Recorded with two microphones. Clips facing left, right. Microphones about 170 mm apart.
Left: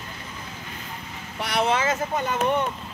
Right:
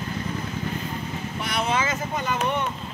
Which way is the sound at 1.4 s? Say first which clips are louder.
Left 3 dB; 70° left (ahead or behind).